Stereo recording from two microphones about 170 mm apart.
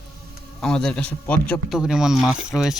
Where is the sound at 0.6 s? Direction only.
5° left (ahead or behind).